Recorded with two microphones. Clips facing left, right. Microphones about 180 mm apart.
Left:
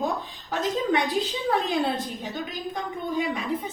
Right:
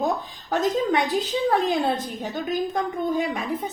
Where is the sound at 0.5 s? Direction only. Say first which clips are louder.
Right 3 dB; 45° right (ahead or behind).